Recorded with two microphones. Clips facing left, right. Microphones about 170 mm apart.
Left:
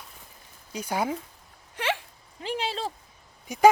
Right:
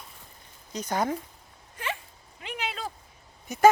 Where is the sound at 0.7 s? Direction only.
10° left (ahead or behind).